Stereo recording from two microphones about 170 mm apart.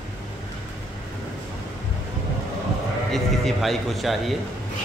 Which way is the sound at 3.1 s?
Centre (ahead or behind).